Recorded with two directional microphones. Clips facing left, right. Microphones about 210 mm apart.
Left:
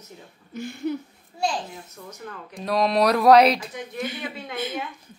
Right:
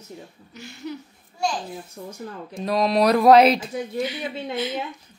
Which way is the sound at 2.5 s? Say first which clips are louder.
Right 1 dB; centre (ahead or behind).